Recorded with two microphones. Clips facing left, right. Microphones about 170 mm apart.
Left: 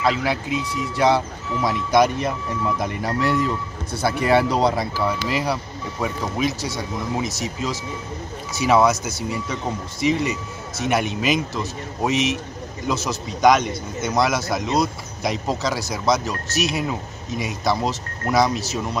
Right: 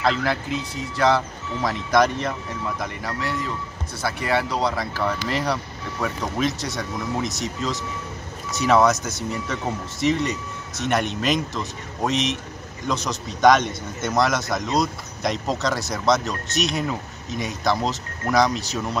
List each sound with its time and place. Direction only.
0.0 s speech: 10° left (ahead or behind)
4.0 s speech: 25° left (ahead or behind)
4.7 s speech: 10° left (ahead or behind)